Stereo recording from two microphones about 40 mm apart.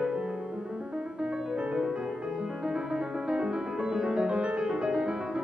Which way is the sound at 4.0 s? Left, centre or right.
Right.